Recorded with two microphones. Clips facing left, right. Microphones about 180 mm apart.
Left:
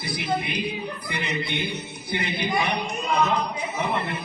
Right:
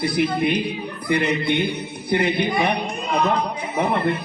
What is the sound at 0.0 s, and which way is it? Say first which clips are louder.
A man's voice: right 7 dB; 60° right (ahead or behind).